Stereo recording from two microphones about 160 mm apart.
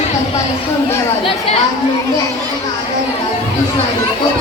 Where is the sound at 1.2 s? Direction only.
35° left (ahead or behind).